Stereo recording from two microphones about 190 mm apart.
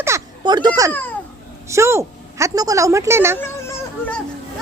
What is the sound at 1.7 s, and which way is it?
A woman's voice, 15° right (ahead or behind).